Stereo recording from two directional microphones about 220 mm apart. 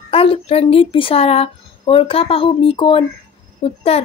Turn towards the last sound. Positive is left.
turn(degrees=25)  # may be behind; listen again after turning